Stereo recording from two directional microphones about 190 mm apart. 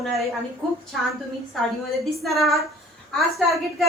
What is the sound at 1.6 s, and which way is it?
A woman's voice, centre (ahead or behind).